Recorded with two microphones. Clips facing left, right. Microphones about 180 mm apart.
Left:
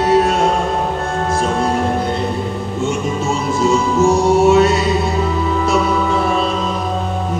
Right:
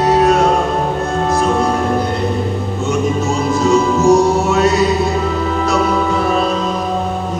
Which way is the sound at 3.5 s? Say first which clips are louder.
Right 1 dB; 25° left (ahead or behind).